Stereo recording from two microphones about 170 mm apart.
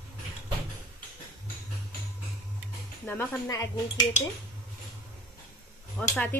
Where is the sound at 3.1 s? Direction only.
15° left (ahead or behind).